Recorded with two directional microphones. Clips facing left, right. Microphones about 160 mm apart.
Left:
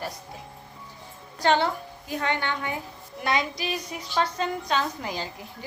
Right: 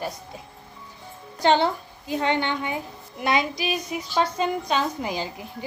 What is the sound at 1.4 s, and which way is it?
A woman's voice, 25° right (ahead or behind).